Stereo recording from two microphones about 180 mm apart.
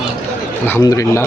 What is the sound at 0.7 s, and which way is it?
Speech, 15° left (ahead or behind).